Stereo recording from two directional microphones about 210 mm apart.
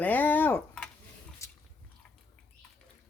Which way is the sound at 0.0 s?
5° left (ahead or behind).